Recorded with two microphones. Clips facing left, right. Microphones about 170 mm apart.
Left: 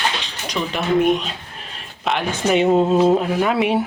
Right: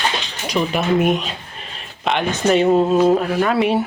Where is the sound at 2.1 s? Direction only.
5° left (ahead or behind).